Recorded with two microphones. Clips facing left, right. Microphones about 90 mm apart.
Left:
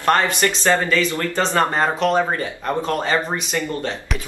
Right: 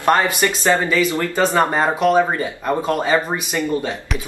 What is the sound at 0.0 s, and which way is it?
Speech, 15° right (ahead or behind).